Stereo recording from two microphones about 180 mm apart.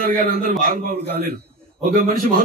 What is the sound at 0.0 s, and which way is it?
A man's voice, 55° right (ahead or behind).